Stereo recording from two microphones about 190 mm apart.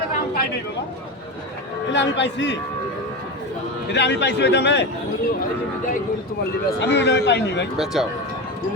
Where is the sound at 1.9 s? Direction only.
70° left (ahead or behind).